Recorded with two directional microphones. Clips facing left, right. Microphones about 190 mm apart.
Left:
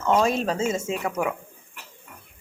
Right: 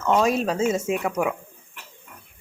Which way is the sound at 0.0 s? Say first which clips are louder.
Even; 5° left (ahead or behind).